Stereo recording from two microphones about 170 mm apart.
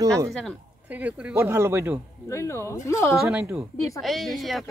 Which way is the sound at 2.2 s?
15° left (ahead or behind).